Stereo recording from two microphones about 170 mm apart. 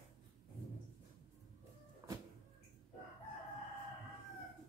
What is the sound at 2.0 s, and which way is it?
Cupboard open or close, 15° right (ahead or behind).